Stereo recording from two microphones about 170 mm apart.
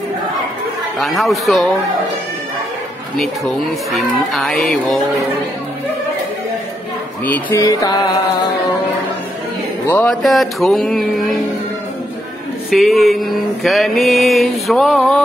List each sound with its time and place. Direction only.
0.9 s mantra: centre (ahead or behind)
3.2 s mantra: centre (ahead or behind)
7.2 s music: 10° left (ahead or behind)
9.8 s a sound: 10° left (ahead or behind)
10.2 s mantra: centre (ahead or behind)
12.7 s mantra: centre (ahead or behind)